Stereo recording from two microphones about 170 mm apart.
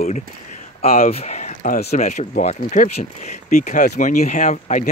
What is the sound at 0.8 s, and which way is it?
Speech, 50° left (ahead or behind).